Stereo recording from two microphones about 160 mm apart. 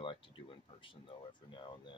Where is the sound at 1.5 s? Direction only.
30° left (ahead or behind).